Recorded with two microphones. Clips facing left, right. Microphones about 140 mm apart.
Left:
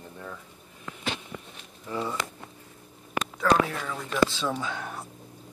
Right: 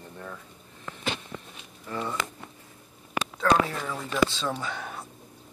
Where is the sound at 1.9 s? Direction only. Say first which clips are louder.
Left 2 dB; 15° left (ahead or behind).